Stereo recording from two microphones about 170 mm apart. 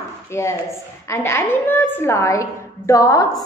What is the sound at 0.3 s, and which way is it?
A woman's voice, 15° left (ahead or behind).